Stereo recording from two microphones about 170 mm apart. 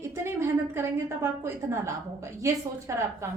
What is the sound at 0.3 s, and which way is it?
A woman's voice, 15° right (ahead or behind).